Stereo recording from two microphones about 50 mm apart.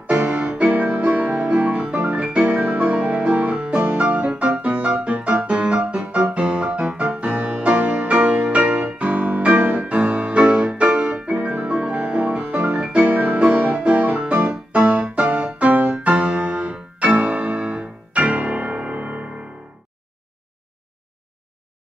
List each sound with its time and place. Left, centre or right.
0.0 s music: right
9.8 s music: right
11.0 s piano: right
13.0 s music: right